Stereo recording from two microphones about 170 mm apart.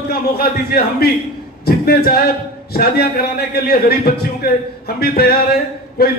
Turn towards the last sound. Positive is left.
turn(degrees=65)  # may be behind; listen again after turning